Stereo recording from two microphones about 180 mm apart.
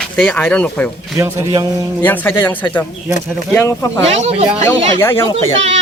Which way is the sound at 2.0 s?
10° left (ahead or behind).